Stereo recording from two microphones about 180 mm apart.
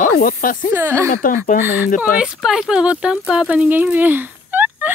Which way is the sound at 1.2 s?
50° left (ahead or behind).